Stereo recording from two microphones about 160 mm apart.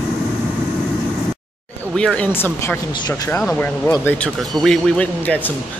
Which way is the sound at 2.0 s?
5° left (ahead or behind).